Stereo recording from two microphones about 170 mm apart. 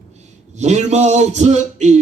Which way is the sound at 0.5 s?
40° right (ahead or behind).